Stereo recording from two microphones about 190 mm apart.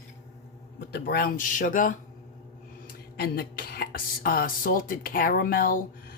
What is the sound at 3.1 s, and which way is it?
Speech, 55° left (ahead or behind).